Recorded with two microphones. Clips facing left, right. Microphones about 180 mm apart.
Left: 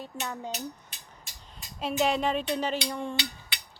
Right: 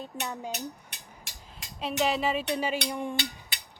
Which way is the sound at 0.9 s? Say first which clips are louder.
Right 2 dB; 90° right.